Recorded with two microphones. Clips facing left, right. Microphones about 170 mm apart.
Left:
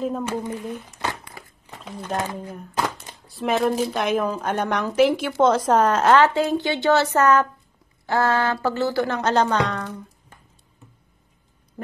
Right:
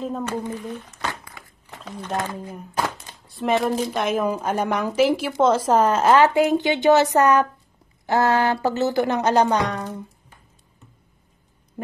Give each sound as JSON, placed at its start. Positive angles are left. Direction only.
{"t": 0.0, "sound": "speech", "side_deg": 5}
{"t": 1.4, "sound": "a sound", "side_deg": 35}
{"t": 1.7, "sound": "speech", "side_deg": 10}
{"t": 2.4, "sound": "speech", "side_deg": 0}
{"t": 6.2, "sound": "speech", "side_deg": -15}